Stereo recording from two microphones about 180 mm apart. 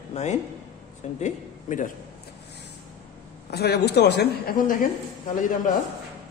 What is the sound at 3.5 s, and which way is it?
A woman's voice, 65° left (ahead or behind).